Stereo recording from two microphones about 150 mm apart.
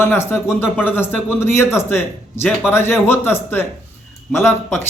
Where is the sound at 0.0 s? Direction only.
15° left (ahead or behind).